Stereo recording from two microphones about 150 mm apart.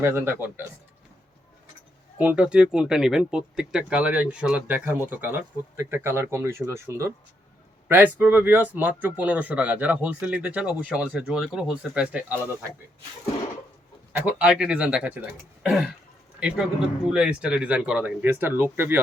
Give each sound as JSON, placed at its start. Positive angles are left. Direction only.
{"t": 0.0, "sound": "speech", "side_deg": -15}
{"t": 2.1, "sound": "speech", "side_deg": -10}
{"t": 14.1, "sound": "speech", "side_deg": -10}